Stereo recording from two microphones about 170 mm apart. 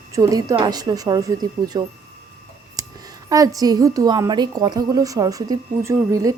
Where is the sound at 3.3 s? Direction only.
20° right (ahead or behind).